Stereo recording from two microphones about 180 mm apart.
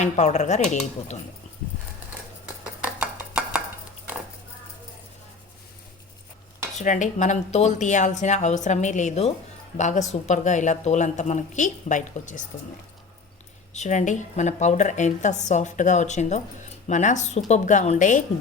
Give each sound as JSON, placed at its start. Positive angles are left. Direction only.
{"t": 0.0, "sound": "a woman's voice", "side_deg": 40}
{"t": 2.8, "sound": "cutlery", "side_deg": -5}
{"t": 6.7, "sound": "a woman's voice", "side_deg": 45}
{"t": 13.7, "sound": "a woman's voice", "side_deg": 40}